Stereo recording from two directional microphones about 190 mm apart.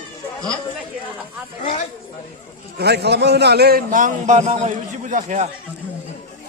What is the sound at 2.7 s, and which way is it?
A man's voice, 60° right (ahead or behind).